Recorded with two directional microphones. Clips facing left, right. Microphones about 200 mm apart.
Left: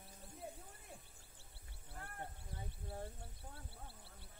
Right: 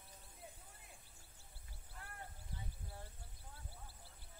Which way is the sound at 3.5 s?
65° left (ahead or behind).